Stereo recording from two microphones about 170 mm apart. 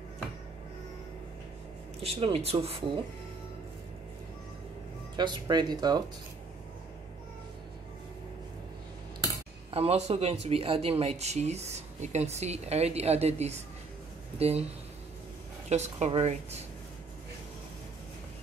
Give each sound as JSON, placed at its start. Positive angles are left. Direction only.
{"t": 2.0, "sound": "speech", "side_deg": -35}
{"t": 5.1, "sound": "speech", "side_deg": -25}
{"t": 9.7, "sound": "speech", "side_deg": -35}
{"t": 15.7, "sound": "speech", "side_deg": -40}